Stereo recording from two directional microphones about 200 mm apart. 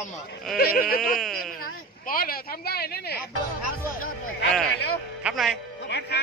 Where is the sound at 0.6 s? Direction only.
50° left (ahead or behind).